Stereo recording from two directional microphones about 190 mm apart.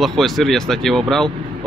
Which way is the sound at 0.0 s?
Centre (ahead or behind).